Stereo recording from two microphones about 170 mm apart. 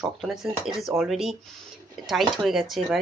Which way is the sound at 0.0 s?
Centre (ahead or behind).